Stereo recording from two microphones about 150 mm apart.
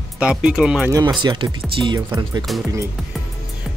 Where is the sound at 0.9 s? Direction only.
20° right (ahead or behind).